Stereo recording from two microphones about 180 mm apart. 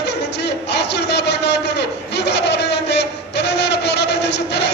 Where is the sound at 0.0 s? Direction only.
70° left (ahead or behind).